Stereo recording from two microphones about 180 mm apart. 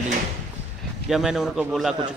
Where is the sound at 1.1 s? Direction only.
Centre (ahead or behind).